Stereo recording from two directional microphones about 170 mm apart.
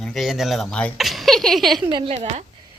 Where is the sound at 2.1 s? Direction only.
40° right (ahead or behind).